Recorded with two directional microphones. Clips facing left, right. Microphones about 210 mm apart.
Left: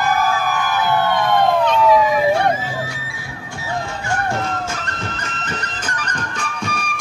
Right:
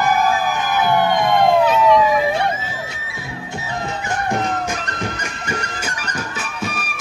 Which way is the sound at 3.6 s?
20° right (ahead or behind).